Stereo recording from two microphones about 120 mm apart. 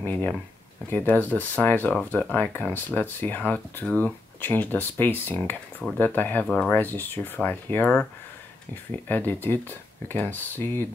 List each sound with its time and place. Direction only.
0.0 s speech: 15° left (ahead or behind)
9.1 s speech: 15° left (ahead or behind)